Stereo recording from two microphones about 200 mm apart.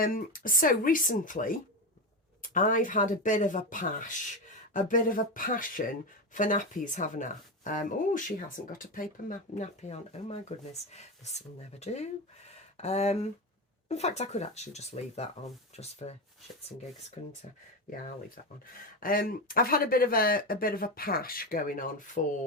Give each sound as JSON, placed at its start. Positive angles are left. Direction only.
{"t": 0.0, "sound": "speech", "side_deg": 45}
{"t": 9.6, "sound": "speech", "side_deg": 35}
{"t": 17.2, "sound": "speech", "side_deg": 35}
{"t": 18.9, "sound": "speech", "side_deg": 45}